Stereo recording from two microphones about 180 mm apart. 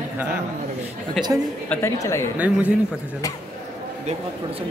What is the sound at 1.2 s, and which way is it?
Speech, centre (ahead or behind).